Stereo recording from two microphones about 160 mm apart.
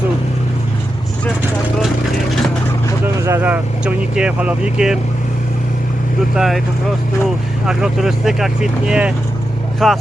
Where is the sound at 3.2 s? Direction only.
15° right (ahead or behind).